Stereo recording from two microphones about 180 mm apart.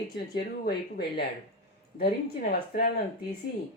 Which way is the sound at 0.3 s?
60° left (ahead or behind).